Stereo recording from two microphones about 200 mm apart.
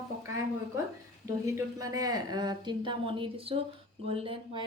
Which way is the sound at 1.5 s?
15° right (ahead or behind).